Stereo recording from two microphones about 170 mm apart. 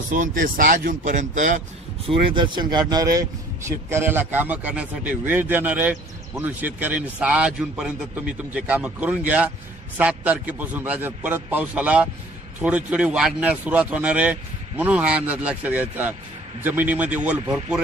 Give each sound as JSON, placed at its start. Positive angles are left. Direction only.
{"t": 0.1, "sound": "speech", "side_deg": -50}
{"t": 2.0, "sound": "speech", "side_deg": -30}